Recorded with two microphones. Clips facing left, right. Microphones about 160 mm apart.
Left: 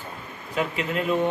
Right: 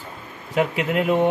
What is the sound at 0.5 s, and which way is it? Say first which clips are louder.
Speech: right 5 dB; 70° right (ahead or behind).